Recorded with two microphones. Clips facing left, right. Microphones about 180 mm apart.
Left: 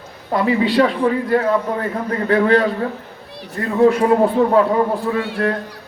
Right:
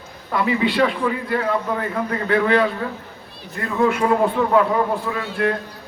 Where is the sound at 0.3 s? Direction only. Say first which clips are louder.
Left 3 dB; 35° left (ahead or behind).